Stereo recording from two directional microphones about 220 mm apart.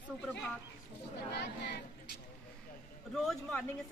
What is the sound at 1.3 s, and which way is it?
Speech, 50° left (ahead or behind).